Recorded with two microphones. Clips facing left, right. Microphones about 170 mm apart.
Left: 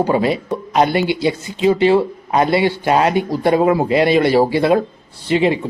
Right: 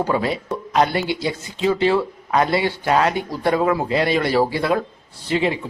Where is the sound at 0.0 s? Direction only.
20° left (ahead or behind).